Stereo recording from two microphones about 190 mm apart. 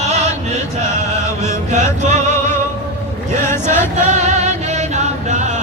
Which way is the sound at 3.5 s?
10° left (ahead or behind).